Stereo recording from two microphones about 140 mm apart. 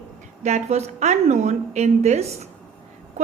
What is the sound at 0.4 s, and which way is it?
A woman's voice, 50° right (ahead or behind).